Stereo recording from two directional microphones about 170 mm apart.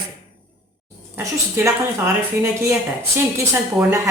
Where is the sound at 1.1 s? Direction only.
15° right (ahead or behind).